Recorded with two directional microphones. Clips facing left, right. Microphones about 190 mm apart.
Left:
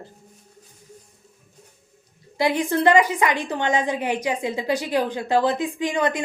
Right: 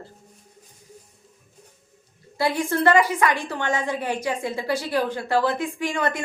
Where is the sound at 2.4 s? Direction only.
20° left (ahead or behind).